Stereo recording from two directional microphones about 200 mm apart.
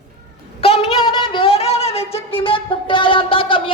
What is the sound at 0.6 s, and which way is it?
Speech, 30° left (ahead or behind).